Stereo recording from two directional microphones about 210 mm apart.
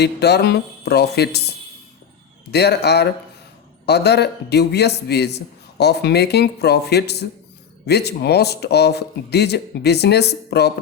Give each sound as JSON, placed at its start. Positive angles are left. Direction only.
{"t": 0.0, "sound": "a man's voice", "side_deg": 50}